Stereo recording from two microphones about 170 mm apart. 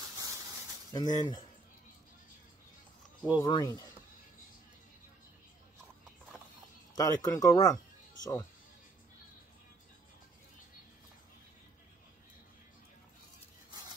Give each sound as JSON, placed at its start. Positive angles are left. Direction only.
{"t": 0.9, "sound": "speech", "side_deg": 25}
{"t": 3.3, "sound": "speech", "side_deg": 25}
{"t": 7.0, "sound": "speech", "side_deg": 20}
{"t": 7.5, "sound": "music", "side_deg": 25}